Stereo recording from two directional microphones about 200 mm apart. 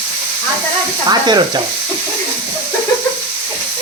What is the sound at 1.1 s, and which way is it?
Stir, 20° right (ahead or behind).